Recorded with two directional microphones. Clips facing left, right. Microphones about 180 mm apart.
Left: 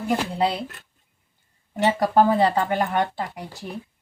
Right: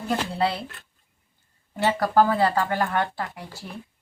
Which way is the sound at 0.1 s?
15° left (ahead or behind).